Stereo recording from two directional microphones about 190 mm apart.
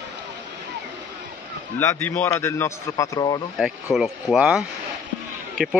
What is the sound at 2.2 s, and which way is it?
A man's voice, 15° left (ahead or behind).